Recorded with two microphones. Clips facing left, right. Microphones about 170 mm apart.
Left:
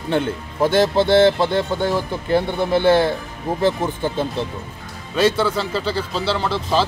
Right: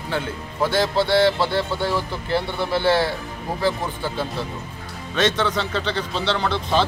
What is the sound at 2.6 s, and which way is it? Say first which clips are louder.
Speech: left 4 dB; 20° left (ahead or behind).